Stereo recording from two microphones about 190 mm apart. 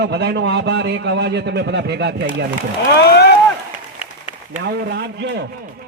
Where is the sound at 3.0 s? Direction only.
60° left (ahead or behind).